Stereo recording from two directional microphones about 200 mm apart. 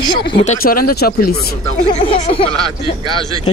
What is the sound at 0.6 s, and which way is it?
Speech, 50° left (ahead or behind).